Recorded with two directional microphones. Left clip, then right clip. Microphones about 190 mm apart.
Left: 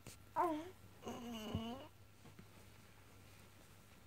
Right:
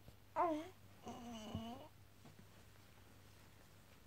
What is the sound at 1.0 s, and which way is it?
Wail, 10° left (ahead or behind).